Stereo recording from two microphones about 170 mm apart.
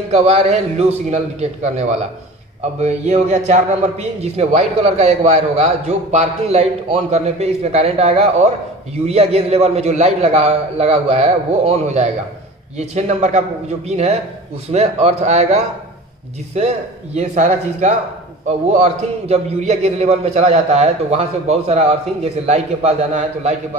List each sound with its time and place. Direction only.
0.1 s a man's voice: 40° right (ahead or behind)